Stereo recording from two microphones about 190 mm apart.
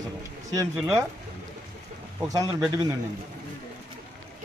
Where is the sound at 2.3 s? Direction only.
20° right (ahead or behind).